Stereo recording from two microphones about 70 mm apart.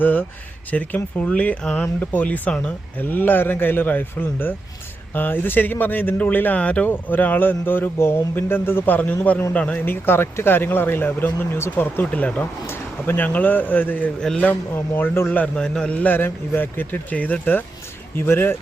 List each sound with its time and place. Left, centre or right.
0.0 s speech: left
12.6 s speech: left
14.2 s a man's voice: centre
14.9 s speech: left
15.3 s speech: centre
16.1 s speech: left